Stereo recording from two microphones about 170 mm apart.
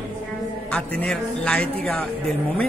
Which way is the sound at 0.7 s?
5° left (ahead or behind).